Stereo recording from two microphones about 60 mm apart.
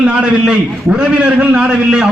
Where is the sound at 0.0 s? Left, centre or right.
Centre.